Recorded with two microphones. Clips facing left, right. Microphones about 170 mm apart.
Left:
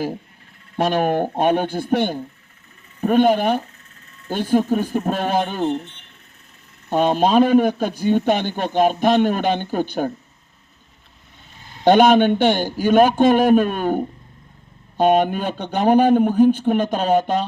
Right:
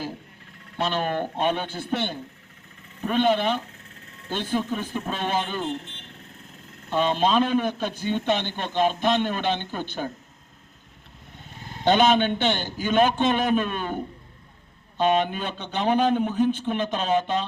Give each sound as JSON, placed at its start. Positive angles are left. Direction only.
{"t": 0.8, "sound": "speech", "side_deg": 50}
{"t": 6.9, "sound": "speech", "side_deg": 50}
{"t": 11.9, "sound": "a man's voice", "side_deg": 60}
{"t": 12.5, "sound": "speech", "side_deg": 10}
{"t": 12.8, "sound": "speech", "side_deg": 50}